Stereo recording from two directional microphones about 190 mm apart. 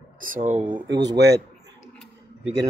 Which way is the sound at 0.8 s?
65° right (ahead or behind).